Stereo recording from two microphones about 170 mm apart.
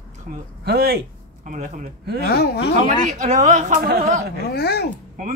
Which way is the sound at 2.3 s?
70° left (ahead or behind).